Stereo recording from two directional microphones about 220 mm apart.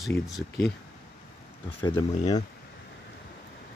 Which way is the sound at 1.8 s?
15° left (ahead or behind).